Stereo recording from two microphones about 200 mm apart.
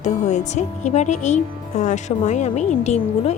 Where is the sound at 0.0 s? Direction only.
35° left (ahead or behind).